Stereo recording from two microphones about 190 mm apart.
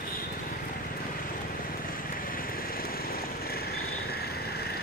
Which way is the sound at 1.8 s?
50° left (ahead or behind).